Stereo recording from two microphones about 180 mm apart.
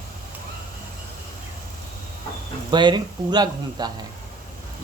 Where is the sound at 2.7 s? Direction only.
25° right (ahead or behind).